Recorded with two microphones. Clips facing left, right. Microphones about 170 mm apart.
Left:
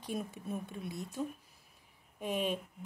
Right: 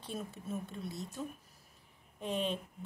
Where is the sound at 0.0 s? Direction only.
15° left (ahead or behind).